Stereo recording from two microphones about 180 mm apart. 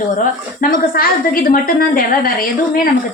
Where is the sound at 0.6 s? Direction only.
50° left (ahead or behind).